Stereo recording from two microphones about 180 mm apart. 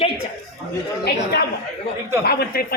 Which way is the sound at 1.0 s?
65° left (ahead or behind).